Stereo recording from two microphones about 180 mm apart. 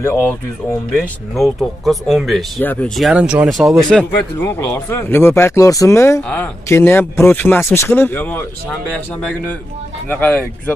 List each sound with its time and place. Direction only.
0.0 s speech: 15° left (ahead or behind)
1.3 s speech: centre (ahead or behind)
3.0 s speech: 5° right (ahead or behind)
3.9 s speech: 15° left (ahead or behind)
10.0 s speech: 5° left (ahead or behind)